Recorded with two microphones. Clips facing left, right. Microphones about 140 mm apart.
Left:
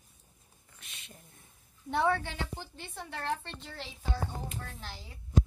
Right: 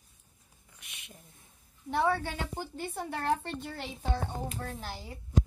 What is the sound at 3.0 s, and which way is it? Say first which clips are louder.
Speech: right 4 dB; 45° right (ahead or behind).